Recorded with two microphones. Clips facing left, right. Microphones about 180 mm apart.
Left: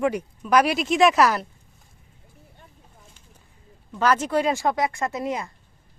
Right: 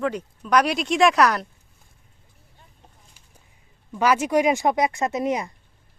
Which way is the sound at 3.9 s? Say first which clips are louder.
Right 2 dB; 10° right (ahead or behind).